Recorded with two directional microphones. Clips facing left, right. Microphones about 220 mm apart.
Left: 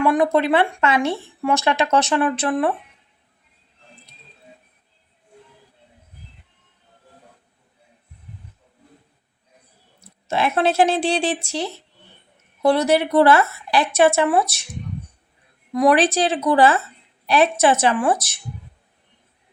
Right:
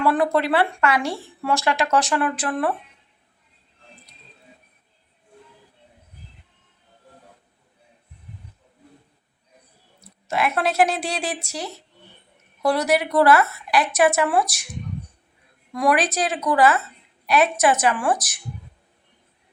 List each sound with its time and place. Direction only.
0.0 s speech: 15° left (ahead or behind)
10.0 s speech: 25° left (ahead or behind)
15.7 s speech: 20° left (ahead or behind)